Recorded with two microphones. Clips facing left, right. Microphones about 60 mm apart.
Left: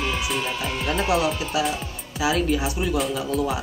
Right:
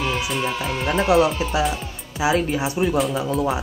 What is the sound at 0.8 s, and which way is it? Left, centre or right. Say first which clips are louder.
Speech: right 5 dB; right.